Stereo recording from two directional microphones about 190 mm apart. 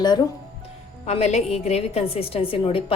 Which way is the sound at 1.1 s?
35° left (ahead or behind).